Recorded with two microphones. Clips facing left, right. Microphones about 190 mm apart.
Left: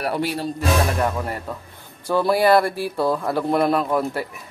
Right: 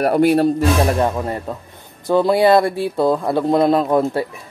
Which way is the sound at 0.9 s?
20° right (ahead or behind).